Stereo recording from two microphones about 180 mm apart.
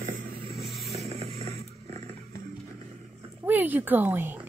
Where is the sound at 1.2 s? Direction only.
35° right (ahead or behind).